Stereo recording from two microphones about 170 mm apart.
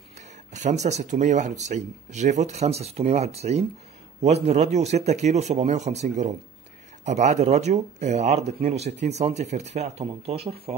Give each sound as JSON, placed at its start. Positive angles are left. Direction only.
{"t": 0.5, "sound": "speech", "side_deg": -45}